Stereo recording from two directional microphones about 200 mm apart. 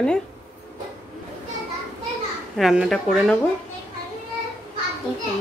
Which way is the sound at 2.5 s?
5° right (ahead or behind).